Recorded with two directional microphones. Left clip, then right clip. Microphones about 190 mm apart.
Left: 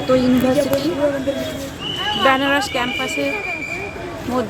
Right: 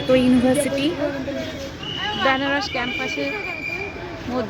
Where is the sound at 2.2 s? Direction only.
10° left (ahead or behind).